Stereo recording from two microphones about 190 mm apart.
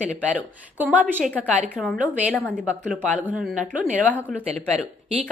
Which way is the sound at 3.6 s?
40° right (ahead or behind).